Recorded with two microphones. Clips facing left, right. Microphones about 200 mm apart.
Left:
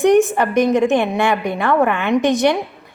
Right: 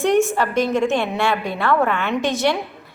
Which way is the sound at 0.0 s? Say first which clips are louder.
Left 4 dB; 15° left (ahead or behind).